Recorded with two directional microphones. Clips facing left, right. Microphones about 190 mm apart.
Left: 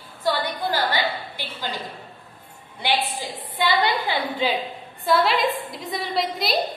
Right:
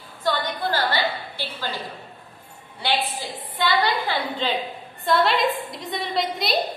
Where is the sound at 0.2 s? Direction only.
10° left (ahead or behind).